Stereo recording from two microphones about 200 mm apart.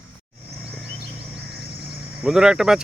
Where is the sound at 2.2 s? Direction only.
5° right (ahead or behind).